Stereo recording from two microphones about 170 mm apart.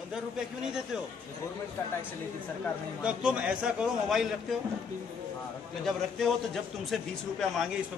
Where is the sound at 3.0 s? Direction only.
5° right (ahead or behind).